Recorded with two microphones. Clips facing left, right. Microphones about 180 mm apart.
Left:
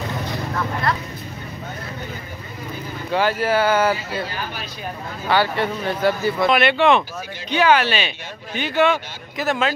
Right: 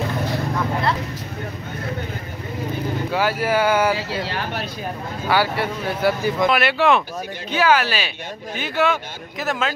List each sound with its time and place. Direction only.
3.1 s speech: 10° right (ahead or behind)
4.2 s speech: 75° right (ahead or behind)
5.3 s speech: 10° right (ahead or behind)